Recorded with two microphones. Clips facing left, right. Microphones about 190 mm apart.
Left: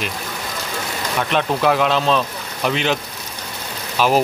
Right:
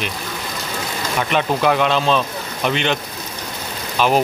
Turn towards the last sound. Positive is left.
turn(degrees=5)  # may be behind; listen again after turning